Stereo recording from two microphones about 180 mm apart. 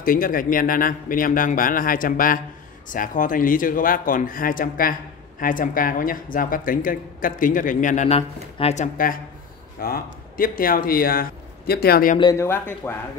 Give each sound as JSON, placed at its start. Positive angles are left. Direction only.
{"t": 0.0, "sound": "a man's voice", "side_deg": 50}
{"t": 12.2, "sound": "speech", "side_deg": 20}